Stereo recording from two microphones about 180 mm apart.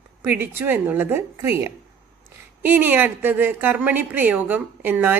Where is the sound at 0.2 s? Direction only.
10° right (ahead or behind).